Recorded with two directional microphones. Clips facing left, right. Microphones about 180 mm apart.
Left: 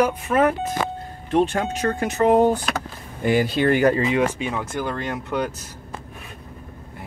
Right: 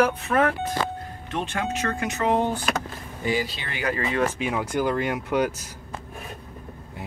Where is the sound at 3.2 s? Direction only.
55° left (ahead or behind).